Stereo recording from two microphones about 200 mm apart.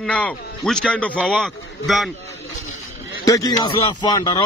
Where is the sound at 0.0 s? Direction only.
5° left (ahead or behind).